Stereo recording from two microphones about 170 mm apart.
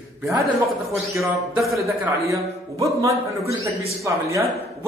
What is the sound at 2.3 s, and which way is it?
A man's voice, 20° right (ahead or behind).